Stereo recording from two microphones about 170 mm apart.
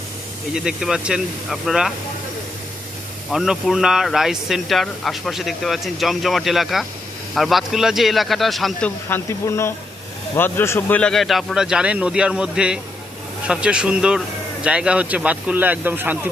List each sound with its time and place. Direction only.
0.5 s speech: 5° right (ahead or behind)
3.3 s speech: 5° right (ahead or behind)
9.0 s speech: 15° left (ahead or behind); by 16.3 s 10° right (ahead or behind)